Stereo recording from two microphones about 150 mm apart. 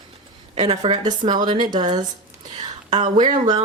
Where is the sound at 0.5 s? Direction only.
45° right (ahead or behind).